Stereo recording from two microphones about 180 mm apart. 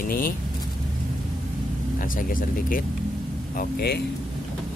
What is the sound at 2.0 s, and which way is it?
Speech, 50° left (ahead or behind).